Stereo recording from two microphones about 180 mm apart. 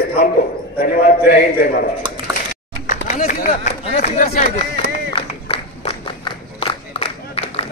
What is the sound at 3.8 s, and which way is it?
Speech, 40° left (ahead or behind).